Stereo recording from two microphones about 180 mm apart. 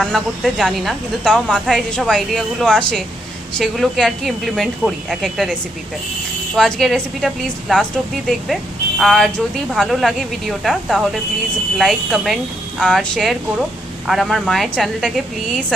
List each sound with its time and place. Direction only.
0.0 s speech: centre (ahead or behind)
6.6 s speech: centre (ahead or behind)
9.0 s speech: centre (ahead or behind)